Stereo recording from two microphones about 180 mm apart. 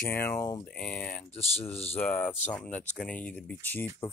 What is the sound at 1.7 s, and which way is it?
Speech, 35° left (ahead or behind).